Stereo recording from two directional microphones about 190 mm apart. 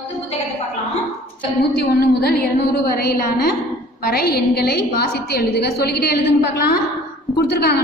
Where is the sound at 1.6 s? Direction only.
55° left (ahead or behind).